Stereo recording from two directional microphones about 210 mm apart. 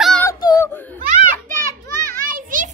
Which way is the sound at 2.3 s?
40° right (ahead or behind).